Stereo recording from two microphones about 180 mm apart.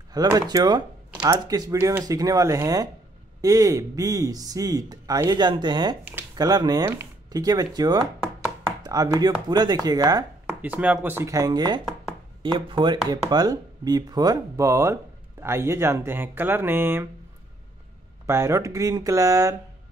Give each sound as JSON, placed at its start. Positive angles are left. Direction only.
{"t": 0.1, "sound": "speech", "side_deg": -20}
{"t": 10.6, "sound": "speech", "side_deg": -10}
{"t": 18.2, "sound": "speech", "side_deg": -15}